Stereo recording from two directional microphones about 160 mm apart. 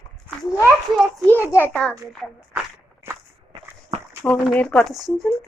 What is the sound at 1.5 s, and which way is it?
Speech, 10° left (ahead or behind).